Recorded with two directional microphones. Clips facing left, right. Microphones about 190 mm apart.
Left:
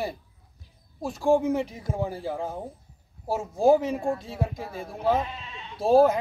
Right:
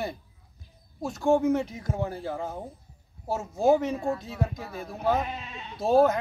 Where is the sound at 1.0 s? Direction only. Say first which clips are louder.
Left 1 dB; 30° left (ahead or behind).